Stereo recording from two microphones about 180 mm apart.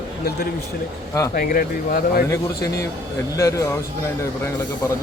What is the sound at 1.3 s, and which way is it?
Speech, 50° left (ahead or behind).